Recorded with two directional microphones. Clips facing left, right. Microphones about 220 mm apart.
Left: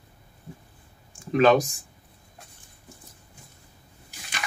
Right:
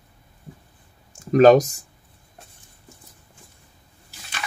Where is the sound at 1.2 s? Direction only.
40° right (ahead or behind).